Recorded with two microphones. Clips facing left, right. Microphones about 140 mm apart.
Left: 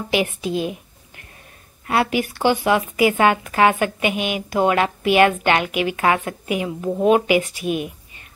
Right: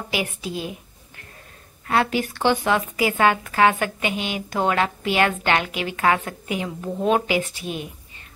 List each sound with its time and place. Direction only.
0.1 s a woman's voice: 20° left (ahead or behind)
1.9 s a woman's voice: 15° left (ahead or behind)